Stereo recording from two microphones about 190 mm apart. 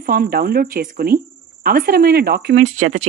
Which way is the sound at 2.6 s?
40° right (ahead or behind).